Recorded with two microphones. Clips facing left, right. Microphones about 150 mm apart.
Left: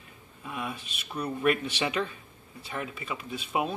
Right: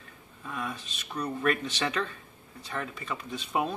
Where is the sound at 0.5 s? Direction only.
10° left (ahead or behind).